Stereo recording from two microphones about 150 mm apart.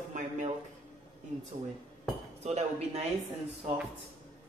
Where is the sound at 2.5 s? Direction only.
45° right (ahead or behind).